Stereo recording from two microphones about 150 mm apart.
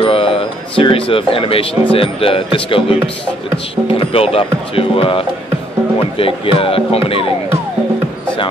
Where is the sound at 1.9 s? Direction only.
40° left (ahead or behind).